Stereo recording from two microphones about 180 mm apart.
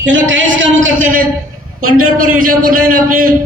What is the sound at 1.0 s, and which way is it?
Speech, 50° right (ahead or behind).